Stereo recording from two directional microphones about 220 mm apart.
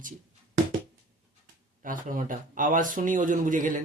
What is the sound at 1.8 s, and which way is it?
Speech, 35° right (ahead or behind).